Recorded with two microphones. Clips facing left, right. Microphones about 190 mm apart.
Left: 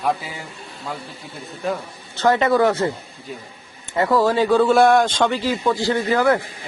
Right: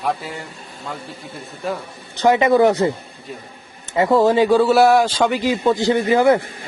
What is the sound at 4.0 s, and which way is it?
Speech, 20° right (ahead or behind).